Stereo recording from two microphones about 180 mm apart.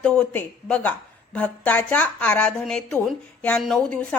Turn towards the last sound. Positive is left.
turn(degrees=5)  # may be behind; listen again after turning